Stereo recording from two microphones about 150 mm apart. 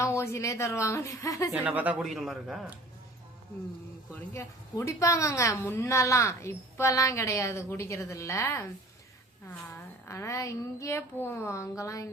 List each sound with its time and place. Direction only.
0.0 s a woman's voice: 15° left (ahead or behind)
1.5 s speech: 10° right (ahead or behind)
4.1 s a woman's voice: 20° left (ahead or behind)
10.1 s a woman's voice: 20° left (ahead or behind)